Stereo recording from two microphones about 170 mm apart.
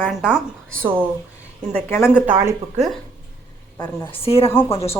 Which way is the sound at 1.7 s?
15° left (ahead or behind).